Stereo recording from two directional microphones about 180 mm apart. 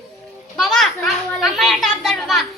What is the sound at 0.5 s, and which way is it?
A child's voice, centre (ahead or behind).